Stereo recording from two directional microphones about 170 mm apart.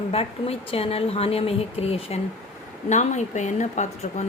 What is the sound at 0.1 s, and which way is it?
A woman's voice, 35° left (ahead or behind).